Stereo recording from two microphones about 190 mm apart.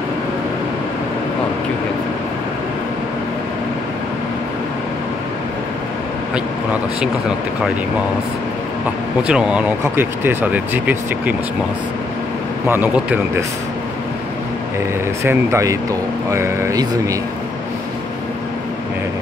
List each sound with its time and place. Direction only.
6.3 s speech: 5° right (ahead or behind)
9.3 s speech: 5° right (ahead or behind)
12.6 s speech: 10° right (ahead or behind)
15.2 s speech: 15° right (ahead or behind)